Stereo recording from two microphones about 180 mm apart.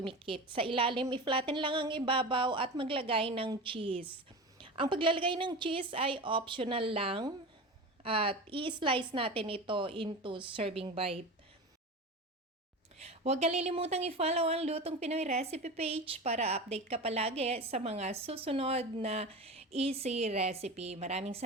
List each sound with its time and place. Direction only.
0.0 s a woman's voice: 30° right (ahead or behind)
13.0 s speech: 35° right (ahead or behind)